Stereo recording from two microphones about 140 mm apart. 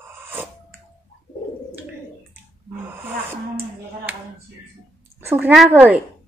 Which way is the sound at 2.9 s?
15° right (ahead or behind).